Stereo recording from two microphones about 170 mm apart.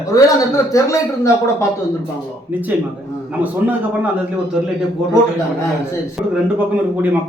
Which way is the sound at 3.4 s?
10° right (ahead or behind).